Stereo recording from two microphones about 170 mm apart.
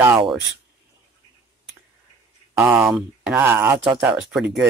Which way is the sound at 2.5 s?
10° right (ahead or behind).